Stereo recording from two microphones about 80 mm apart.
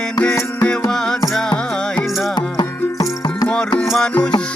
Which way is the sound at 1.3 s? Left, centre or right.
Centre.